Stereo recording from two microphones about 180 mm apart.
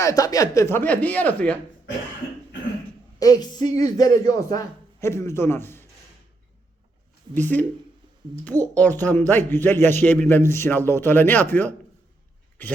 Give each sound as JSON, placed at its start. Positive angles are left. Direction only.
{"t": 0.0, "sound": "a man's voice", "side_deg": 20}
{"t": 3.2, "sound": "a sound", "side_deg": 20}
{"t": 3.8, "sound": "a man's voice", "side_deg": 20}
{"t": 7.3, "sound": "a man's voice", "side_deg": 10}